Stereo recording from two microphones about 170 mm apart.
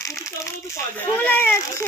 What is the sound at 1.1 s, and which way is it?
Speech, 10° left (ahead or behind).